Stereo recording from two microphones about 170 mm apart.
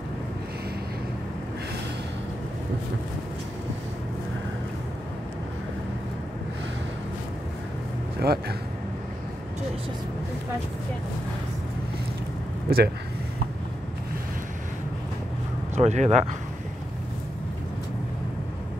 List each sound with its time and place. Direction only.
8.2 s speech: 70° right (ahead or behind)
12.6 s speech: 65° right (ahead or behind)
15.7 s speech: 45° right (ahead or behind)